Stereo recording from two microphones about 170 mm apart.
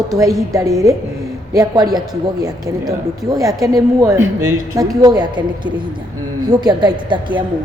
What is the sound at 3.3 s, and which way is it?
A woman's voice, 20° right (ahead or behind).